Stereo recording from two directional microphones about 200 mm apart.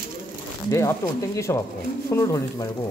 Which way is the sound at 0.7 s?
15° left (ahead or behind).